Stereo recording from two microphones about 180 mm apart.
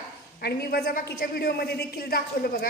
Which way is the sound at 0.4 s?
60° left (ahead or behind).